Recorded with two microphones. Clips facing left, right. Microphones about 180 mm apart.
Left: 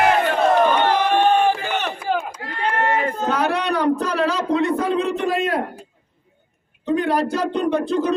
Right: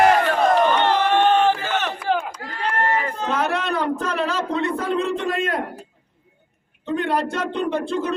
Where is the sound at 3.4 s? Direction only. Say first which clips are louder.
Left 5 dB; centre (ahead or behind).